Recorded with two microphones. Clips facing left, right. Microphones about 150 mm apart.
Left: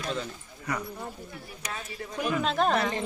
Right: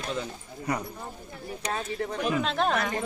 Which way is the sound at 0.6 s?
25° right (ahead or behind).